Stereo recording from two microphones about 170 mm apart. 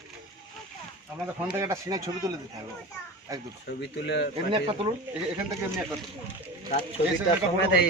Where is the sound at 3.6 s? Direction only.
80° left.